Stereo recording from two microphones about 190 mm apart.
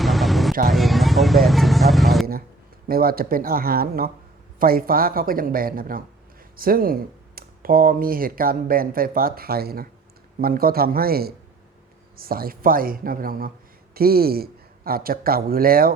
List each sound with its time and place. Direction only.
0.0 s vehicle: centre (ahead or behind)
2.8 s speech: 50° right (ahead or behind)